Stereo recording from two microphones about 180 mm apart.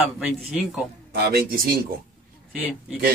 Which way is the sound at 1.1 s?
60° right (ahead or behind).